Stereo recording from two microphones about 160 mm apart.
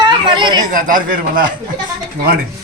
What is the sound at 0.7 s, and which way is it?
Speech, 60° right (ahead or behind).